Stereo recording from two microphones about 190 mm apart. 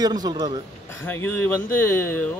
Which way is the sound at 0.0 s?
20° right (ahead or behind).